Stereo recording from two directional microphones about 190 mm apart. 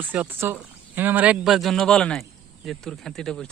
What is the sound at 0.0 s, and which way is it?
Speech, 10° right (ahead or behind).